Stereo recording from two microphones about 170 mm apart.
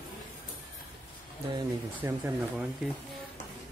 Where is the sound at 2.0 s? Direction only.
10° right (ahead or behind).